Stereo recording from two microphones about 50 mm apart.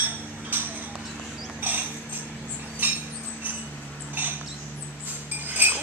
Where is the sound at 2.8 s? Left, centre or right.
Right.